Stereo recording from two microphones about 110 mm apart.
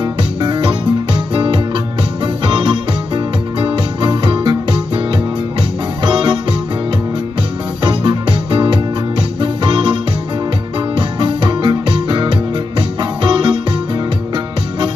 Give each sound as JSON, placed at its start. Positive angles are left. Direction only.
{"t": 0.0, "sound": "music", "side_deg": -45}
{"t": 7.8, "sound": "music", "side_deg": -45}
{"t": 11.0, "sound": "music", "side_deg": -45}